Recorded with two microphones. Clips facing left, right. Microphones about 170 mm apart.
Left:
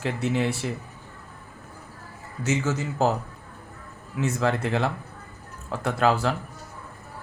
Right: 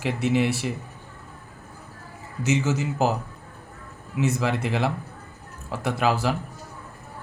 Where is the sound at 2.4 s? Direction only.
20° right (ahead or behind).